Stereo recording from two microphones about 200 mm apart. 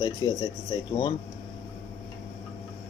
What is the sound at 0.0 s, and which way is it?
Speech, 20° left (ahead or behind).